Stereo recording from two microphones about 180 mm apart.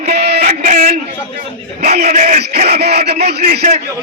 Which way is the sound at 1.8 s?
40° right (ahead or behind).